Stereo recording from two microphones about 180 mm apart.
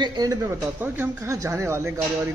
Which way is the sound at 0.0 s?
25° right (ahead or behind).